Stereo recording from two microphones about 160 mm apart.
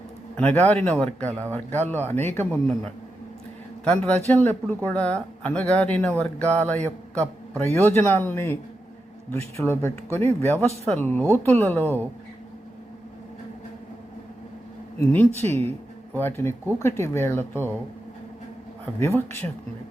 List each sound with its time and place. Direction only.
0.3 s speech: 10° left (ahead or behind)
1.3 s speech: 15° right (ahead or behind)
1.5 s a man's voice: 10° left (ahead or behind)
15.0 s speech: 10° left (ahead or behind)
15.4 s speech: 40° right (ahead or behind)
16.1 s speech: 15° left (ahead or behind)
18.9 s speech: 15° left (ahead or behind)